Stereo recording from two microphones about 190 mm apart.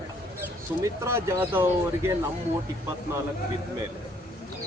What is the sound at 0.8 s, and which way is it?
A man's voice, 15° right (ahead or behind).